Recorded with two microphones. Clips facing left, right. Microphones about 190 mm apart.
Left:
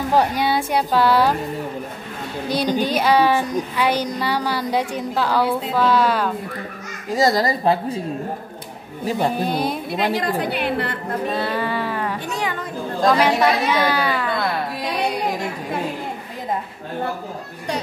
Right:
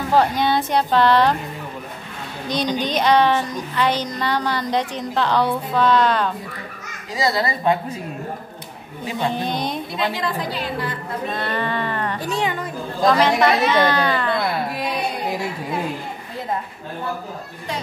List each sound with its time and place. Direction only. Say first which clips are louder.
0.1 s a woman's voice: right 1 dB; 10° left (ahead or behind)
2.4 s a woman's voice: left 2 dB; 5° left (ahead or behind)
7.1 s a woman's voice: left 4 dB; 50° left (ahead or behind)
9.3 s a woman's voice: left 2 dB; 5° left (ahead or behind)
10.3 s a woman's voice: left 4 dB; 65° left (ahead or behind)
11.3 s a woman's voice: left 1 dB; 5° left (ahead or behind)
12.3 s a woman's voice: right 3 dB; 30° right (ahead or behind)
13.0 s a woman's voice: even; 10° left (ahead or behind)